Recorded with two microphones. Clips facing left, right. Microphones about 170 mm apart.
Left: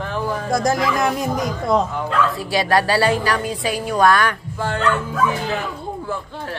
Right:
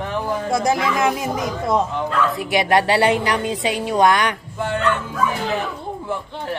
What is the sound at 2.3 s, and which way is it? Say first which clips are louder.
A woman's voice: right 1 dB; 20° right (ahead or behind).